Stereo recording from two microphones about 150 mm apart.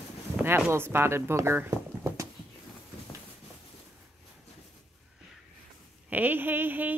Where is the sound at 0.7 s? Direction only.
15° right (ahead or behind).